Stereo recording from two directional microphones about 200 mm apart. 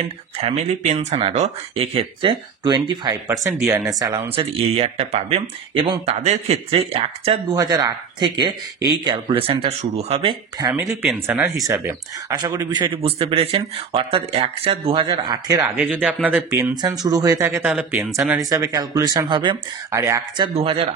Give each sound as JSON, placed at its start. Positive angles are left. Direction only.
{"t": 0.4, "sound": "speech", "side_deg": -30}
{"t": 7.5, "sound": "speech", "side_deg": -20}
{"t": 10.6, "sound": "speech", "side_deg": -15}
{"t": 15.8, "sound": "speech", "side_deg": -5}
{"t": 20.4, "sound": "speech", "side_deg": -25}